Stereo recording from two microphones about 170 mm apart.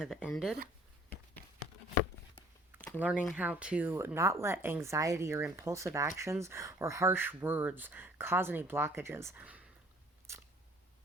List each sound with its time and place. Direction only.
0.0 s speech: 5° right (ahead or behind)
3.0 s speech: 5° right (ahead or behind)
10.3 s a sound: 15° right (ahead or behind)